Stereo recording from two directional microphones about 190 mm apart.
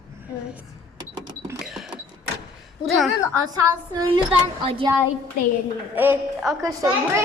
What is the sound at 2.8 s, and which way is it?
Speech, centre (ahead or behind).